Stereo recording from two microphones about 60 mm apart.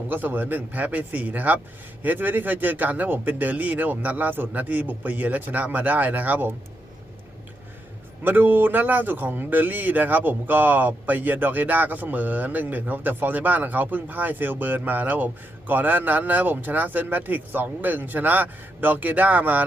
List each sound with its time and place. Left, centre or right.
0.1 s speech: right
8.2 s speech: right